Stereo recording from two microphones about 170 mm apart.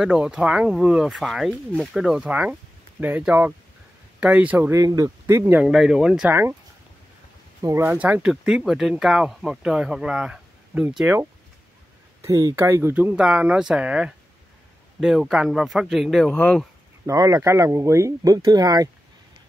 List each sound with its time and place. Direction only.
0.0 s speech: 5° right (ahead or behind)
7.6 s speech: 15° right (ahead or behind)
12.2 s speech: 20° right (ahead or behind); by 16.6 s 5° left (ahead or behind)
17.0 s speech: 20° right (ahead or behind)